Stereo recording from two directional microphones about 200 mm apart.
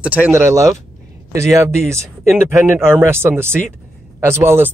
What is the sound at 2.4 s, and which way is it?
Speech, 10° right (ahead or behind).